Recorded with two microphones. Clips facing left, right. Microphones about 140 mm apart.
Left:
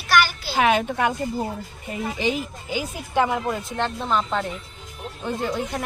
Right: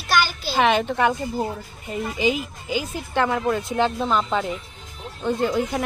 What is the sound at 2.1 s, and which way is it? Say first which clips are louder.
Speech: right 3 dB; centre (ahead or behind).